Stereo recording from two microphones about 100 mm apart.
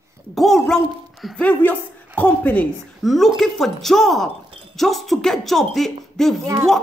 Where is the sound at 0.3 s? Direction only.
Centre (ahead or behind).